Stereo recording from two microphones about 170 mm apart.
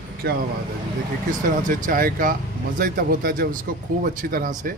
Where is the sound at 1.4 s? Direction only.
55° right (ahead or behind).